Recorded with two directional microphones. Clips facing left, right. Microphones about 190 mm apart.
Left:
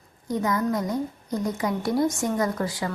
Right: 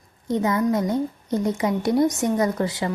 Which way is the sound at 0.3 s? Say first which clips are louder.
Right 4 dB; 25° right (ahead or behind).